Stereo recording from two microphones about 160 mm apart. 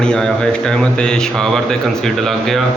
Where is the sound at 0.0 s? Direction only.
5° left (ahead or behind).